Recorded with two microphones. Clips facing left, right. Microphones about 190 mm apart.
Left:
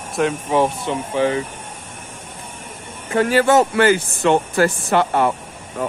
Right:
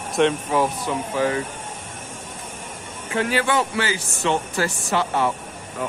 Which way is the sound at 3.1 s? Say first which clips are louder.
Left 7 dB; 45° left (ahead or behind).